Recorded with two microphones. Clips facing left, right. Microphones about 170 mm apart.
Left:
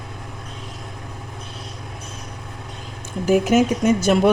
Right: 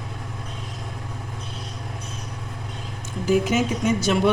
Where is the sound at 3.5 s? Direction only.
50° left (ahead or behind).